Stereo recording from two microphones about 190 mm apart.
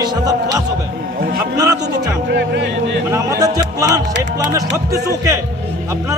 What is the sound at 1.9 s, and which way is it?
Speech, 60° right (ahead or behind).